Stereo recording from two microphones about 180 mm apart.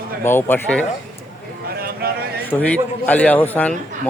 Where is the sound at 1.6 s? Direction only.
55° right (ahead or behind).